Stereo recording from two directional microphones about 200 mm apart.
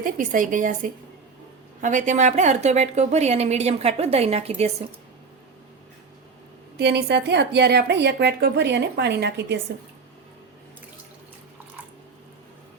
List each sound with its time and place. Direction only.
0.0 s a woman's voice: 40° right (ahead or behind)
6.7 s a woman's voice: 55° right (ahead or behind)